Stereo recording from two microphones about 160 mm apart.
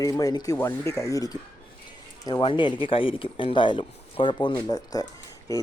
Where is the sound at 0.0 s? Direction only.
20° left (ahead or behind).